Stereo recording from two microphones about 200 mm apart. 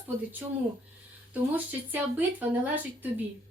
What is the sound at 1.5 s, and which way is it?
Speech, 10° right (ahead or behind).